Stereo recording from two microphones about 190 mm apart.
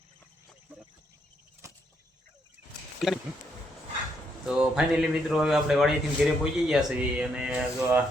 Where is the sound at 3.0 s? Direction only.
Centre (ahead or behind).